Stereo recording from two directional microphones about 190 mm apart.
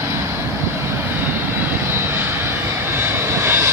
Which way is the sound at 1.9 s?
10° right (ahead or behind).